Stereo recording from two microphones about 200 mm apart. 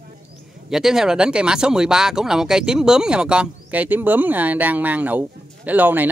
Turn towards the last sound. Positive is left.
turn(degrees=-10)  # may be behind; listen again after turning